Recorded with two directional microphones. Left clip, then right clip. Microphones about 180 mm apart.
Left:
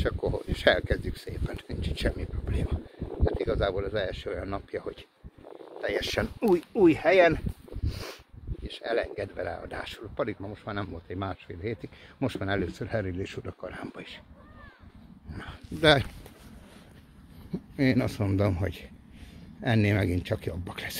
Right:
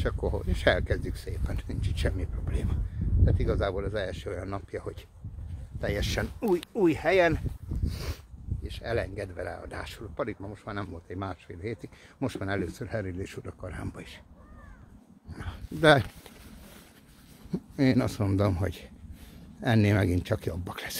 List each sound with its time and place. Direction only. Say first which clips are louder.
0.0 s speech: left 2 dB; 10° right (ahead or behind)
1.4 s speech: left 2 dB; centre (ahead or behind)
6.7 s speech: left 3 dB; 10° left (ahead or behind)
15.8 s speech: right 1 dB; 40° right (ahead or behind)
17.7 s speech: even; 25° right (ahead or behind)